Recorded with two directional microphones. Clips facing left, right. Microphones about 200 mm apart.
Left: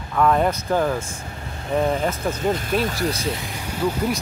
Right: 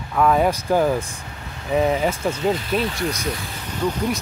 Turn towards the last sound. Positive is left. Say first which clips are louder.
# even
turn(degrees=5)  # may be behind; listen again after turning